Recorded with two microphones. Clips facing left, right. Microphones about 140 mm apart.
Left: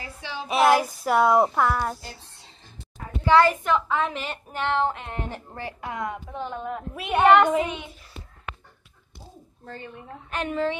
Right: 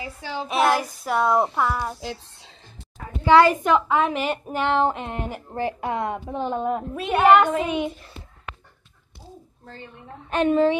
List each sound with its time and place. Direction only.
0.2 s child singing: 45° right (ahead or behind)
0.5 s speech: 5° left (ahead or behind)
2.0 s speech: 90° right
3.3 s a woman's voice: 15° right (ahead or behind)
7.2 s speech: 5° right (ahead or behind)
10.3 s a woman's voice: 25° right (ahead or behind)